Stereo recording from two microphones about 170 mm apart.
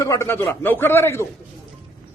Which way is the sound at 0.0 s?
20° left (ahead or behind).